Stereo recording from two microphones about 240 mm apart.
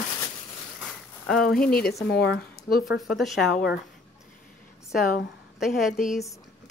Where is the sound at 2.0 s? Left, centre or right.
Left.